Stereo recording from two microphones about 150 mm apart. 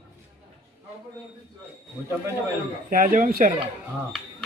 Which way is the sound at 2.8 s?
65° right (ahead or behind).